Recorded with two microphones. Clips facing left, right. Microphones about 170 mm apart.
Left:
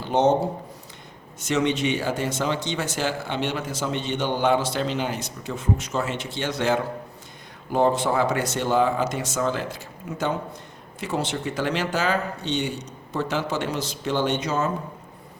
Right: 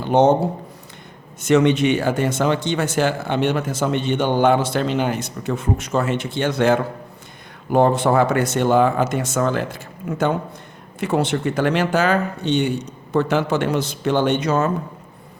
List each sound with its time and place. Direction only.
0.0 s speech: 55° right (ahead or behind)
1.4 s speech: 60° right (ahead or behind)